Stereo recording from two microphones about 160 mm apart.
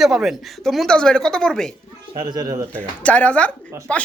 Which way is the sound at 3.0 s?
10° left (ahead or behind).